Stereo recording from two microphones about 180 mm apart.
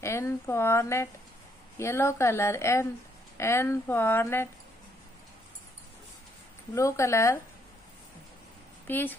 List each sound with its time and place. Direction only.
0.0 s speech: 15° left (ahead or behind)
6.7 s speech: 15° left (ahead or behind)
8.8 s speech: 10° left (ahead or behind)